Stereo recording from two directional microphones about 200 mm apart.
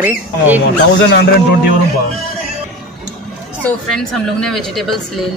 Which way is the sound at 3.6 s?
5° left (ahead or behind).